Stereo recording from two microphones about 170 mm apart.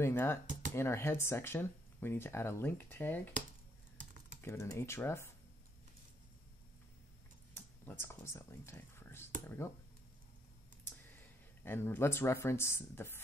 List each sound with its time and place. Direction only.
0.0 s speech: 15° left (ahead or behind)
4.4 s speech: 15° left (ahead or behind)
7.5 s speech: 15° left (ahead or behind)
10.8 s speech: 10° left (ahead or behind)